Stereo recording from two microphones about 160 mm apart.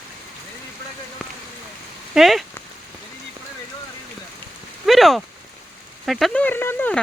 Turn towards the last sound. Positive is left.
turn(degrees=10)  # may be behind; listen again after turning